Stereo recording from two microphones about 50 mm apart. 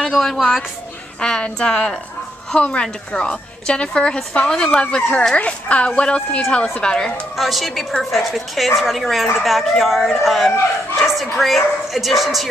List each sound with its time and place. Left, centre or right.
0.2 s speech: centre
1.2 s a woman's voice: centre
2.6 s a woman's voice: left
7.3 s speech: centre